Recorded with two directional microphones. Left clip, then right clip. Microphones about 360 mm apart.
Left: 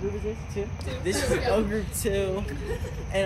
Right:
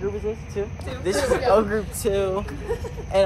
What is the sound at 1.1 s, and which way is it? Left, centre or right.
Speech, centre.